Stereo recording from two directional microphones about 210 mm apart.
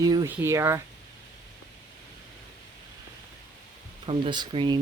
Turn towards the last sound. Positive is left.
turn(degrees=-20)  # may be behind; listen again after turning